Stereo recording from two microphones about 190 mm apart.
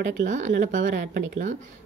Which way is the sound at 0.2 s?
40° right (ahead or behind).